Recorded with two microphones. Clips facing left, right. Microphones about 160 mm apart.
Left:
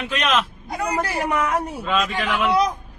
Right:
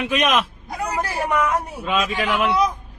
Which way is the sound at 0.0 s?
10° right (ahead or behind).